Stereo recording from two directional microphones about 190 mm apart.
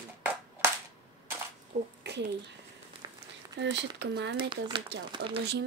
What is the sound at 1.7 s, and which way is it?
Speech, 40° right (ahead or behind).